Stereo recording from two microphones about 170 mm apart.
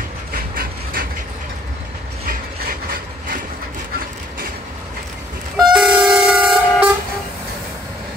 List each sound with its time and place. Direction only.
0.3 s a sound: 60° right (ahead or behind)
2.2 s mechanisms: 60° right (ahead or behind)
5.6 s vehicle: 5° right (ahead or behind)